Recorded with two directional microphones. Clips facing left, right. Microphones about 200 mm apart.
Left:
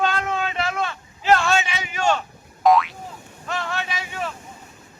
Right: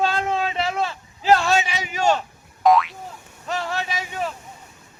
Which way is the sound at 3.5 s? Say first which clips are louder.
Right 1 dB; 35° right (ahead or behind).